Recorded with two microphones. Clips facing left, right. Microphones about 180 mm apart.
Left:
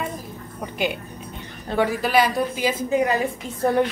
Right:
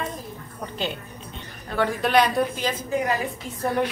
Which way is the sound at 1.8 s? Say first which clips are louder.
Left 1 dB; 5° left (ahead or behind).